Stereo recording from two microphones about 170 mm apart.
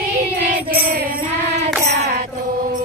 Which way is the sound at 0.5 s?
55° right (ahead or behind).